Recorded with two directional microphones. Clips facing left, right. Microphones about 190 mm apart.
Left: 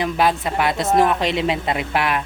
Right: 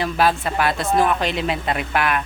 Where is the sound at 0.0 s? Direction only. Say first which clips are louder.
Even; 20° left (ahead or behind).